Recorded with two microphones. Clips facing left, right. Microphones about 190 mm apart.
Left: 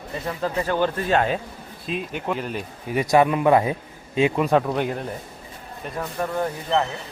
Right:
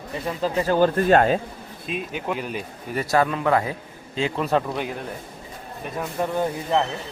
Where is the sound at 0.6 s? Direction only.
45° right (ahead or behind).